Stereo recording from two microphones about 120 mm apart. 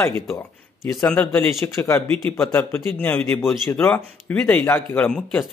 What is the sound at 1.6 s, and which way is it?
A man's voice, 20° left (ahead or behind).